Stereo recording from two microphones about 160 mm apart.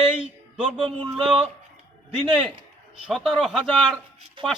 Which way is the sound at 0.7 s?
5° left (ahead or behind).